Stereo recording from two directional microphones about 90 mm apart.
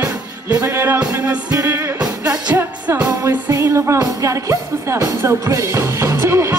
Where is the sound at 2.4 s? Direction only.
15° right (ahead or behind).